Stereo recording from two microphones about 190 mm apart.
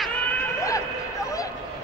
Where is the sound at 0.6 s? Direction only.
15° left (ahead or behind).